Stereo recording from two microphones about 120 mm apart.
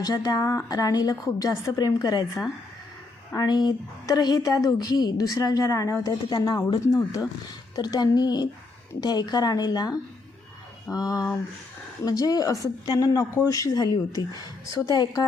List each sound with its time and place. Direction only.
0.0 s a woman's voice: 30° left (ahead or behind)
3.3 s a woman's voice: 35° left (ahead or behind)